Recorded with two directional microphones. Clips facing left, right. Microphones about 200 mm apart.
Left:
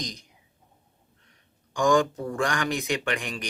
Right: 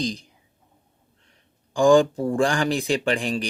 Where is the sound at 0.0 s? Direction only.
30° right (ahead or behind).